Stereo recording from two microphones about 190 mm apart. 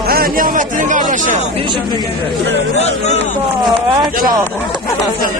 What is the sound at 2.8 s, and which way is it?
Speech, 35° left (ahead or behind).